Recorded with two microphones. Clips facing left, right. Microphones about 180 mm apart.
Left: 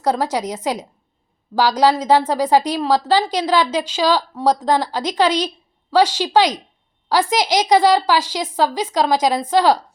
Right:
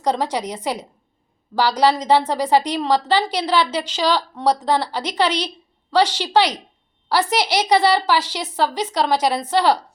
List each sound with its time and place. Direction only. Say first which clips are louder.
0.0 s a woman's voice: left 2 dB; 10° left (ahead or behind)